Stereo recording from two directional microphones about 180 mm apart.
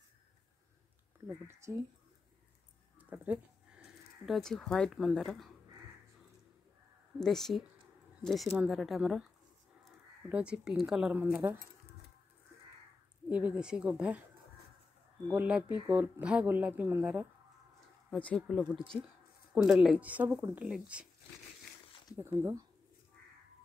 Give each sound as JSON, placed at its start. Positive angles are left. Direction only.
{"t": 1.5, "sound": "speech", "side_deg": -15}
{"t": 3.0, "sound": "speech", "side_deg": -10}
{"t": 7.2, "sound": "speech", "side_deg": 0}
{"t": 13.3, "sound": "speech", "side_deg": -5}
{"t": 15.3, "sound": "speech", "side_deg": -5}
{"t": 18.1, "sound": "speech", "side_deg": 5}
{"t": 22.1, "sound": "speech", "side_deg": -15}